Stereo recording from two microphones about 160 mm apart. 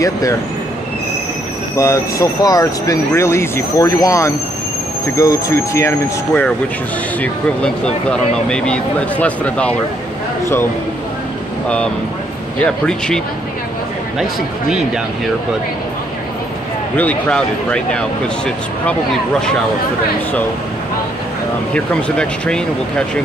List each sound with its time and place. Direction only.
0.0 s speech: 20° left (ahead or behind)
1.8 s speech: 20° left (ahead or behind)
12.6 s speech: 5° left (ahead or behind)
16.9 s speech: 10° left (ahead or behind)
21.7 s speech: 5° left (ahead or behind)